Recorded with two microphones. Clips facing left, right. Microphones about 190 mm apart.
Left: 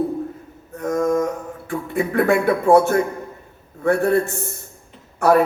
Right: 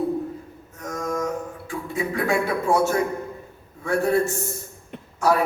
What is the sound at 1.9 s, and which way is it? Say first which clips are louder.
A man's voice: left 6 dB; 55° left (ahead or behind).